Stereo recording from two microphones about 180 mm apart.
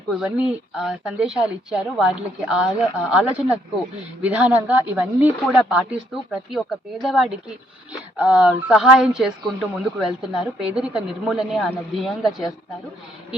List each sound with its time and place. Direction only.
0.1 s a woman's voice: 5° right (ahead or behind)
12.2 s speech: 20° left (ahead or behind)